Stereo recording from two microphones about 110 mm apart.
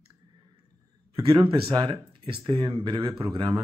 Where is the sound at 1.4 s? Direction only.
45° right (ahead or behind).